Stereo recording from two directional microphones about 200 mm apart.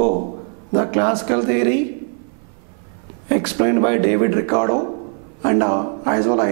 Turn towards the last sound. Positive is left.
turn(degrees=-5)  # may be behind; listen again after turning